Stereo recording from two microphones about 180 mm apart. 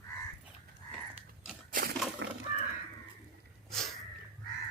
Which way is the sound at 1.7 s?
60° right (ahead or behind).